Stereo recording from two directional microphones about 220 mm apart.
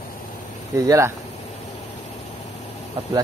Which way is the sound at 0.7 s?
15° right (ahead or behind).